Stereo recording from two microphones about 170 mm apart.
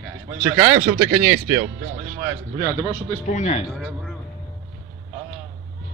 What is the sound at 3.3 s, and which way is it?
Speech, 45° left (ahead or behind).